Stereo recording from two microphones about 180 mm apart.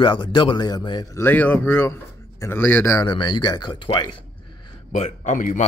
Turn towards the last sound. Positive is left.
turn(degrees=45)  # may be behind; listen again after turning